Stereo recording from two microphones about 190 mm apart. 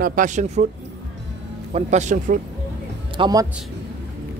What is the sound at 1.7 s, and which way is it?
Speech, 35° right (ahead or behind).